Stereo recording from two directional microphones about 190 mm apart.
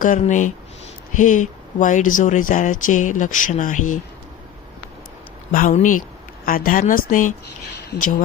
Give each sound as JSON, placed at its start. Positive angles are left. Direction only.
{"t": 0.0, "sound": "speech", "side_deg": 40}
{"t": 5.5, "sound": "speech", "side_deg": 45}